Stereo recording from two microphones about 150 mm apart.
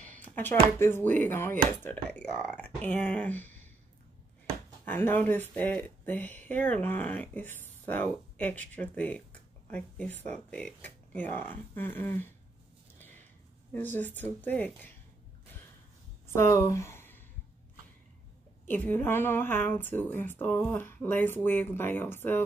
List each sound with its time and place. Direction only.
0.0 s speech: 10° left (ahead or behind)
4.8 s speech: 15° left (ahead or behind)
13.7 s speech: 10° left (ahead or behind)
16.3 s speech: 20° left (ahead or behind)
18.7 s speech: 10° left (ahead or behind)